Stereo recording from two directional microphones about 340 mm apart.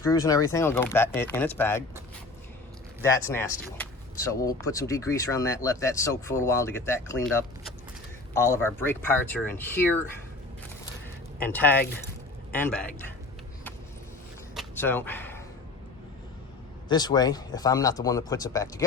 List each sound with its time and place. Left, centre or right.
0.0 s speech: centre
3.0 s speech: centre
11.5 s a man's voice: centre
14.5 s a sound: centre
16.9 s speech: centre